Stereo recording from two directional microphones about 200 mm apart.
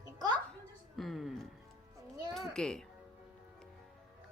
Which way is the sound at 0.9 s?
Centre (ahead or behind).